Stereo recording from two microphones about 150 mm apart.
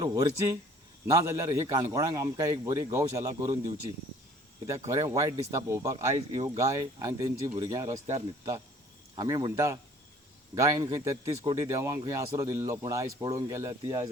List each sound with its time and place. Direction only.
0.0 s a man's voice: 25° right (ahead or behind)
6.3 s speech: 45° right (ahead or behind)
6.6 s a man's voice: 20° right (ahead or behind)
9.1 s a man's voice: 25° right (ahead or behind)